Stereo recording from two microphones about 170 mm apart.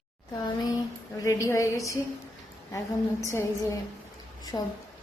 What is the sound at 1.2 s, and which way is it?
A woman's voice, 15° left (ahead or behind).